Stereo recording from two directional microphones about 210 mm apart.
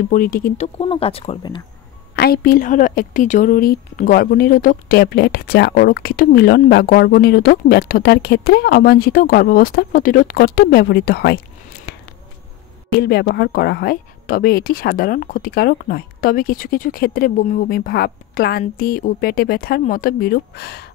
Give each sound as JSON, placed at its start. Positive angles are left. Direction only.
{"t": 0.1, "sound": "a woman's voice", "side_deg": 40}
{"t": 0.7, "sound": "speech", "side_deg": 30}
{"t": 2.1, "sound": "a woman's voice", "side_deg": 45}
{"t": 13.0, "sound": "a woman's voice", "side_deg": 50}